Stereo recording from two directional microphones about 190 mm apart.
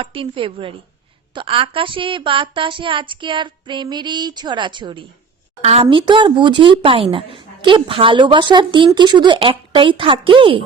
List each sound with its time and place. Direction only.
0.0 s speech: 25° right (ahead or behind)